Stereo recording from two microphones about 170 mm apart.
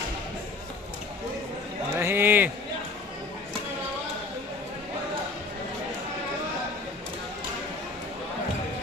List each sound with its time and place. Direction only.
2.0 s speech: 15° right (ahead or behind)